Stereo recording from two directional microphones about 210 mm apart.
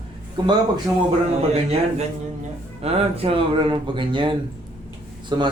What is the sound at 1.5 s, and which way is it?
A man's voice, 30° right (ahead or behind).